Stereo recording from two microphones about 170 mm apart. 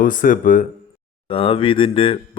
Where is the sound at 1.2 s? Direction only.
30° left (ahead or behind).